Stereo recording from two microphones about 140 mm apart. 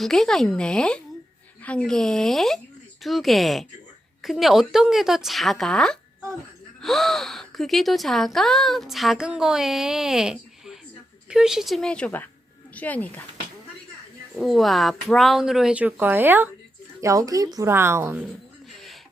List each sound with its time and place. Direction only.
0.0 s speech: 5° left (ahead or behind)
14.3 s a woman's voice: centre (ahead or behind); by 18.2 s 15° right (ahead or behind)